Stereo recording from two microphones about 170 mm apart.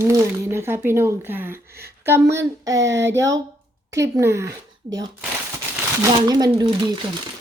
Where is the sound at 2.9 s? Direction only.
90° right.